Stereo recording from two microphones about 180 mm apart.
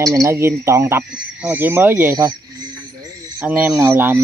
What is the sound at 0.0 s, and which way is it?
Speech, 20° right (ahead or behind).